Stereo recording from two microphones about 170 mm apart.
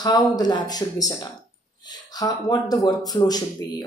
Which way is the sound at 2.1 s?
20° left (ahead or behind).